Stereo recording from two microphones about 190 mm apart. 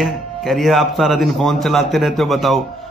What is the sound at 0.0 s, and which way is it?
Speech, centre (ahead or behind).